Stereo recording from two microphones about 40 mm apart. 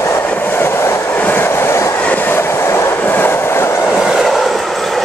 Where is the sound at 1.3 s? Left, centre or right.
Left.